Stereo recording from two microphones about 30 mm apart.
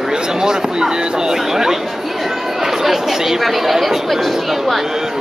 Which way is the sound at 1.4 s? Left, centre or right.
Centre.